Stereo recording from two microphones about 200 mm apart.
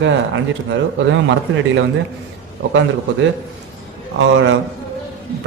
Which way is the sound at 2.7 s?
70° right (ahead or behind).